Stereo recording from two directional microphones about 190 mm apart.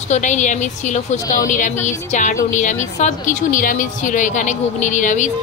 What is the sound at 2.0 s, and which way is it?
Speech, 40° left (ahead or behind).